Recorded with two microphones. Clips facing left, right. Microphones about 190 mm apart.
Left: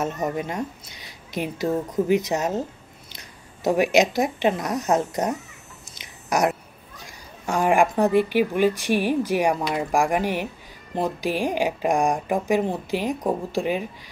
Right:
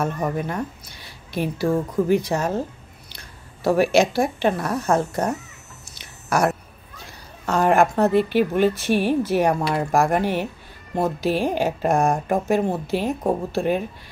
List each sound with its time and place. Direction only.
0.0 s a woman's voice: 20° left (ahead or behind)
5.9 s a sound: 20° left (ahead or behind)
7.4 s a woman's voice: 10° left (ahead or behind)